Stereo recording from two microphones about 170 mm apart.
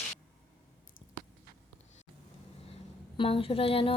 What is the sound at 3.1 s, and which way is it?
Speech, 30° left (ahead or behind).